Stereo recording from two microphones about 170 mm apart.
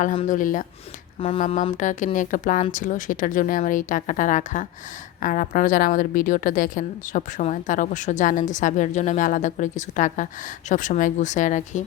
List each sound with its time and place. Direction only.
0.3 s a woman's voice: 50° left (ahead or behind)